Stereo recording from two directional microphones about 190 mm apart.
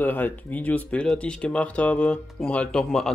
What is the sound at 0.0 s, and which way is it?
Speech, 10° left (ahead or behind).